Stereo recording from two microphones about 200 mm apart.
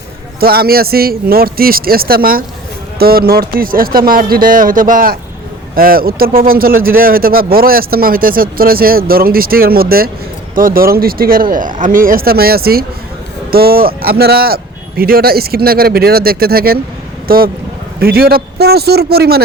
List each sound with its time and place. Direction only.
0.3 s speech: 50° right (ahead or behind)